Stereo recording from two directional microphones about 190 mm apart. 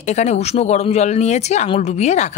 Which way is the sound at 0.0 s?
35° left (ahead or behind).